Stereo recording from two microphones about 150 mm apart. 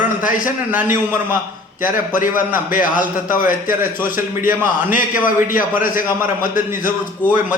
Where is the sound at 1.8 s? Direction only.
60° left (ahead or behind).